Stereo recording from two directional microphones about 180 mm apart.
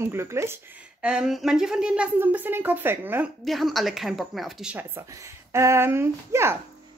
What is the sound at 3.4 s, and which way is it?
A woman's voice, centre (ahead or behind).